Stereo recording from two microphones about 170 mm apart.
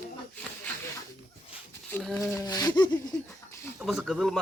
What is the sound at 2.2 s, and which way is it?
Speech, 20° left (ahead or behind).